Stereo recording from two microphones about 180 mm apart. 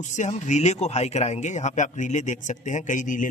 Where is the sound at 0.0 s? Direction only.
40° left (ahead or behind).